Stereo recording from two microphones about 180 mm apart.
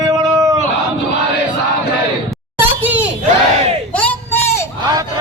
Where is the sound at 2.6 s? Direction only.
10° right (ahead or behind).